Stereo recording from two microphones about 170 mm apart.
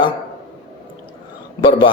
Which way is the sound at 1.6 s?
30° left (ahead or behind).